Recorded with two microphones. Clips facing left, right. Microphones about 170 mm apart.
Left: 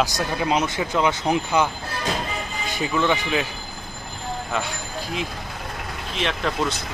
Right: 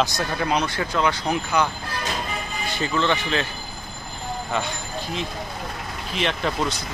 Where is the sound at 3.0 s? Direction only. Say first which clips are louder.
Left 2 dB; 15° left (ahead or behind).